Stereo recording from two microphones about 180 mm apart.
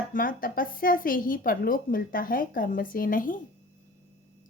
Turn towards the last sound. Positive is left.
turn(degrees=50)  # may be behind; listen again after turning